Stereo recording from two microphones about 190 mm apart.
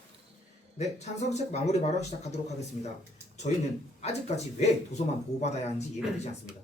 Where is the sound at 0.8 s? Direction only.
35° left (ahead or behind).